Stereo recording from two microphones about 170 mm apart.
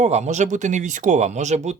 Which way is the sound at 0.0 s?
40° right (ahead or behind).